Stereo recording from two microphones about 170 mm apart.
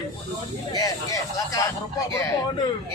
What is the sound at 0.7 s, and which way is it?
Speech, 20° left (ahead or behind).